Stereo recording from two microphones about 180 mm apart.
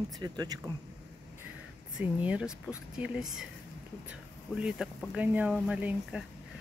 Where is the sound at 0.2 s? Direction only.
20° right (ahead or behind).